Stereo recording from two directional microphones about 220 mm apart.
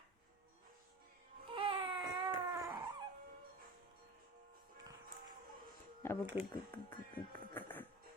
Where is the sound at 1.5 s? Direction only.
25° right (ahead or behind).